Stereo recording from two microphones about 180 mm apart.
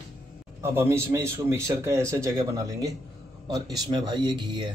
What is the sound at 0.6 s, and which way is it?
Speech, 15° right (ahead or behind).